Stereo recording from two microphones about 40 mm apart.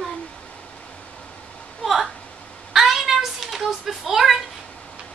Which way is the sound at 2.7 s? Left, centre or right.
Centre.